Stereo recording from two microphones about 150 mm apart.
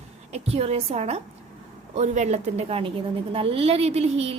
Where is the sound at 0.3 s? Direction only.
45° right (ahead or behind).